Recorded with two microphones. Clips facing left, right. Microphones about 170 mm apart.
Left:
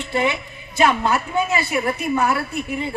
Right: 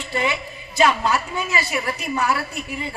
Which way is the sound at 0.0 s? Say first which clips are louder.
Left 3 dB; 55° left (ahead or behind).